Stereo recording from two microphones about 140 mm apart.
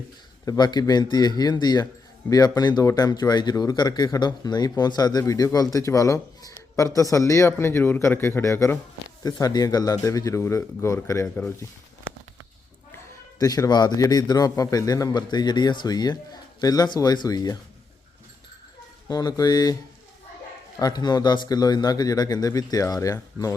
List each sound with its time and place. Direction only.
0.4 s a man's voice: 30° left (ahead or behind)
13.4 s a man's voice: 25° left (ahead or behind)
19.0 s a man's voice: 25° left (ahead or behind)
20.7 s a man's voice: 30° left (ahead or behind)